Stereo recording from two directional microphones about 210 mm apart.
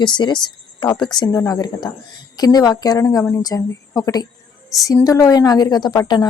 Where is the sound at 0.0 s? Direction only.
20° left (ahead or behind).